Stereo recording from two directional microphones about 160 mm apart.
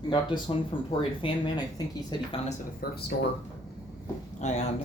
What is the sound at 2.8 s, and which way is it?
Speech, 70° left (ahead or behind).